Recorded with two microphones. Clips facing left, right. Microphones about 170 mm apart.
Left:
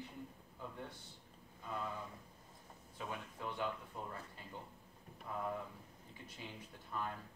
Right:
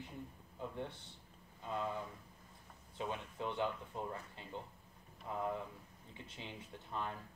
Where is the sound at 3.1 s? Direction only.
25° right (ahead or behind).